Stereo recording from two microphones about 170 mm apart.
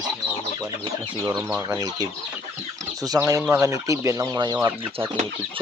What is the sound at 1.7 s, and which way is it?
Speech, 20° right (ahead or behind).